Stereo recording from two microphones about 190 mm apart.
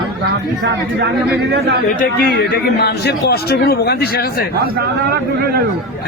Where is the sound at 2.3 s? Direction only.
60° left (ahead or behind).